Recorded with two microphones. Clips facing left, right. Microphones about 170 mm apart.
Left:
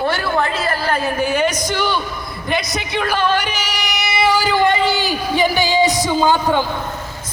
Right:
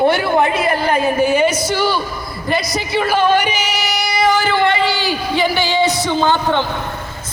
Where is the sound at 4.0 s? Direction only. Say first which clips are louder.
Right 1 dB; 10° left (ahead or behind).